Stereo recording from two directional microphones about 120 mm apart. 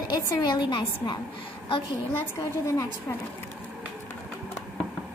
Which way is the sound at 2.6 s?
30° left (ahead or behind).